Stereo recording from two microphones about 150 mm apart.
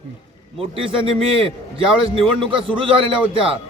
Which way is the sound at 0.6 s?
40° right (ahead or behind).